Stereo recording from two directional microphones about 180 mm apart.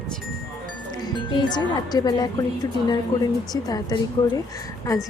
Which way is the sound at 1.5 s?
20° left (ahead or behind).